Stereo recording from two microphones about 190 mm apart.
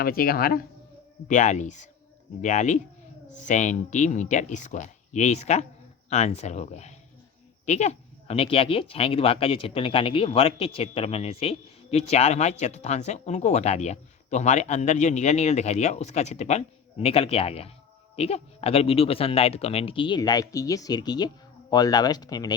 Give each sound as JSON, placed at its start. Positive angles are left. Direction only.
{"t": 0.0, "sound": "speech", "side_deg": 50}
{"t": 1.3, "sound": "speech", "side_deg": 40}